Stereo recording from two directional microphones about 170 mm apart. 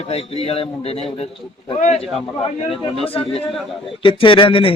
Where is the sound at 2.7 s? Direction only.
35° left (ahead or behind).